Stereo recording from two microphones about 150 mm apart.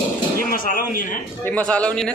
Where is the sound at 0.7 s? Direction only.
70° left (ahead or behind).